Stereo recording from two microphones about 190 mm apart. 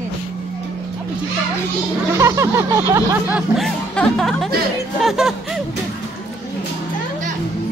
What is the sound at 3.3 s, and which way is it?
Speech, 5° left (ahead or behind).